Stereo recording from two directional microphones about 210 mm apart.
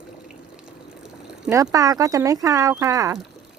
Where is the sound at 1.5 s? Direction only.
15° right (ahead or behind).